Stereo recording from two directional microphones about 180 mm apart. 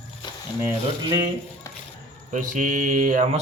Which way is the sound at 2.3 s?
45° right (ahead or behind).